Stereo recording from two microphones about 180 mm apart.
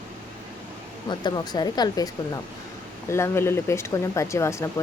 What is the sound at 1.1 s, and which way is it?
Speech, 25° left (ahead or behind).